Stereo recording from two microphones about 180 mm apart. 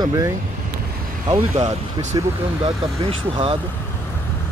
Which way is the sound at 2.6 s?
30° right (ahead or behind).